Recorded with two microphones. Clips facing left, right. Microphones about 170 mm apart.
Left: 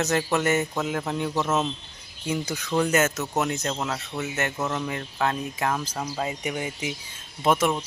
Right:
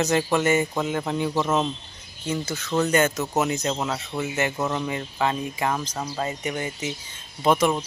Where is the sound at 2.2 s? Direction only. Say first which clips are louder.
Even; 10° left (ahead or behind).